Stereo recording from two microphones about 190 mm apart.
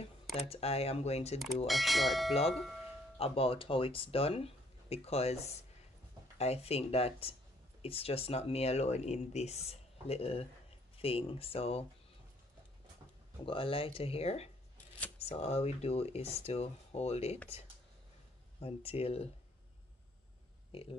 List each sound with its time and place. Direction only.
0.4 s speech: 30° left (ahead or behind)
1.7 s speech: centre (ahead or behind)
3.2 s speech: 30° left (ahead or behind)
13.5 s speech: 30° left (ahead or behind)
18.6 s speech: 30° left (ahead or behind)